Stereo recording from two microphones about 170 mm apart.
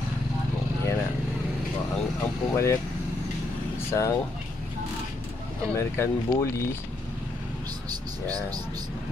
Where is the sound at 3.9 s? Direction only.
20° left (ahead or behind).